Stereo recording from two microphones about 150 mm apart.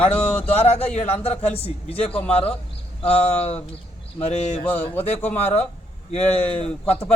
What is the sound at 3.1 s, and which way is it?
A man's voice, 45° left (ahead or behind).